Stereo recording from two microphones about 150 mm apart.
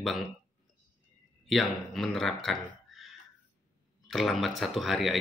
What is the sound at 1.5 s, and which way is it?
Speech, centre (ahead or behind).